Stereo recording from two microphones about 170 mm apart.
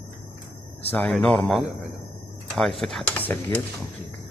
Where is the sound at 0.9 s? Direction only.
10° left (ahead or behind).